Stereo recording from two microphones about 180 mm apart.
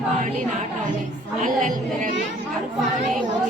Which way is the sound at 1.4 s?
45° right (ahead or behind).